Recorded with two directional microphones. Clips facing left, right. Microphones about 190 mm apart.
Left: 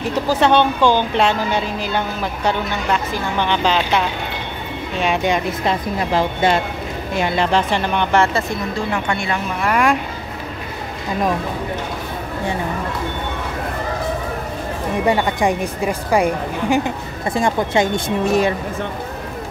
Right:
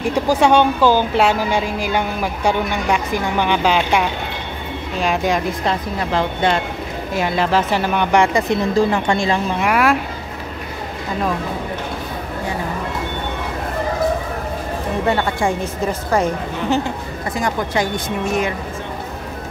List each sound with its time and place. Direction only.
0.1 s speech: 10° right (ahead or behind)
8.9 s speech: 30° right (ahead or behind)
9.6 s speech: 5° right (ahead or behind)
15.0 s a woman's voice: 15° left (ahead or behind)
17.3 s speech: 25° left (ahead or behind)